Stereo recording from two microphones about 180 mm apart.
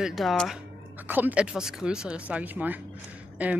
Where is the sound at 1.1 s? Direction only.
10° right (ahead or behind).